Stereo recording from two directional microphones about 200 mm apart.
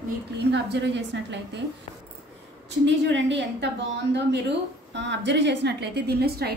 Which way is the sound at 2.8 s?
65° right (ahead or behind).